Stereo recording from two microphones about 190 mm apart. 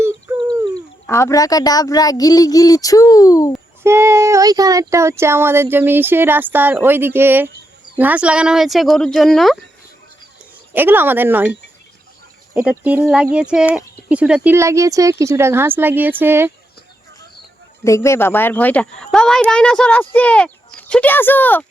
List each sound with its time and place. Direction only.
0.3 s a sound: 25° right (ahead or behind)
1.0 s speech: 15° left (ahead or behind)
3.8 s speech: 15° right (ahead or behind)
10.8 s speech: 10° right (ahead or behind)
12.5 s speech: 10° right (ahead or behind)
17.8 s speech: 15° left (ahead or behind)